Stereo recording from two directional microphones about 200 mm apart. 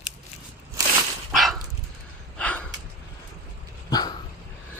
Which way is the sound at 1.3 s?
Centre (ahead or behind).